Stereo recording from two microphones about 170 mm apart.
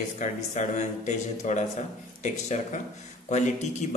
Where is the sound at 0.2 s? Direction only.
45° left (ahead or behind).